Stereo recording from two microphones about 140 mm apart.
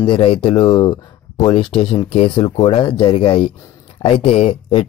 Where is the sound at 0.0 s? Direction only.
35° left (ahead or behind).